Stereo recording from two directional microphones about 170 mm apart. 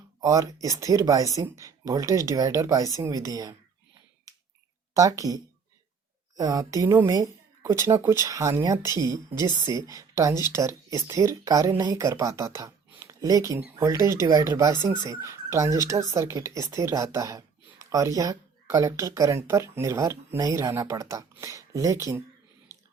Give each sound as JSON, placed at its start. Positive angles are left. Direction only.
{"t": 0.2, "sound": "a woman's voice", "side_deg": -20}
{"t": 4.3, "sound": "finger snapping", "side_deg": -20}
{"t": 4.9, "sound": "a woman's voice", "side_deg": -20}
{"t": 13.6, "sound": "speech", "side_deg": -10}